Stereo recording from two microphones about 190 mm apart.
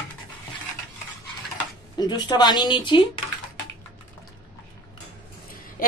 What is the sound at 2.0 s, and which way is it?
Speech, 20° left (ahead or behind).